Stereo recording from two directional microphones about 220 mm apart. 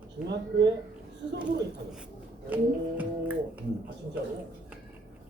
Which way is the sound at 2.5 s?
5° right (ahead or behind).